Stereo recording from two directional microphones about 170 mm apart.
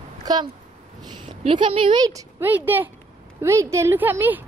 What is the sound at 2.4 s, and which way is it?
A woman's voice, 10° right (ahead or behind).